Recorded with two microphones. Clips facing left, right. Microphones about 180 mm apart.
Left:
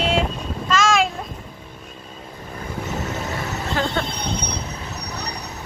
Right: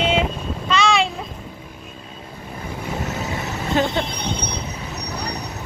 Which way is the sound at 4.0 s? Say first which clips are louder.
Right 1 dB; 15° right (ahead or behind).